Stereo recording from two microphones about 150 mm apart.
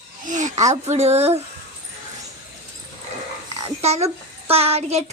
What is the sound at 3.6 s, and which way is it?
A child's voice, 45° right (ahead or behind).